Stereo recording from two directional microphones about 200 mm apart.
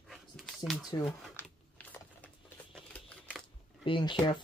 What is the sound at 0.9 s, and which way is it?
Speech, 20° left (ahead or behind).